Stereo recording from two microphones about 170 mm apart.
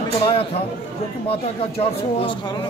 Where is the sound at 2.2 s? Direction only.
30° left (ahead or behind).